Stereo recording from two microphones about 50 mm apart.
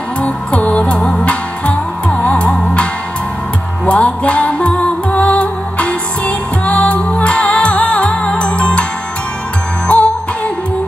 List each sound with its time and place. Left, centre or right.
0.2 s music: left
9.9 s music: left